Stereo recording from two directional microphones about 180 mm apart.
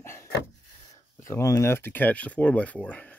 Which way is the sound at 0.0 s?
15° left (ahead or behind).